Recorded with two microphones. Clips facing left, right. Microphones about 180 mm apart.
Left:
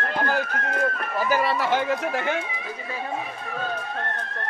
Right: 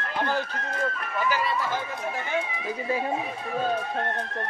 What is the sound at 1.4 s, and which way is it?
Speech, 70° left (ahead or behind).